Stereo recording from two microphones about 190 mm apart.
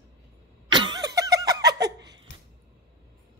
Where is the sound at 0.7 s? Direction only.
25° right (ahead or behind).